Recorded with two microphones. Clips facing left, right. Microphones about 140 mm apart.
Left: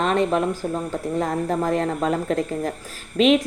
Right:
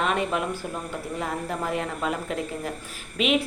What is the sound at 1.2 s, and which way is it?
Speech, 40° left (ahead or behind).